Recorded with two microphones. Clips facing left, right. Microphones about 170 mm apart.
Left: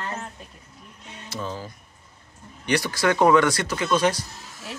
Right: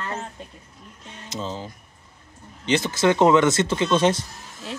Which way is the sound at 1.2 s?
20° right (ahead or behind).